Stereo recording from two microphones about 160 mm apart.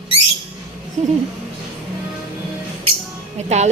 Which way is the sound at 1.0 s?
50° right (ahead or behind).